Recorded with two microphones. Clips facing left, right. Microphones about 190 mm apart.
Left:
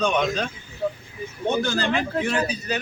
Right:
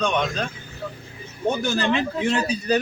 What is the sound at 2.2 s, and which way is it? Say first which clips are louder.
Speech: right 2 dB; 30° right (ahead or behind).